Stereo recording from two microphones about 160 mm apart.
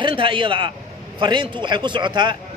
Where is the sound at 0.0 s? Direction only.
30° right (ahead or behind).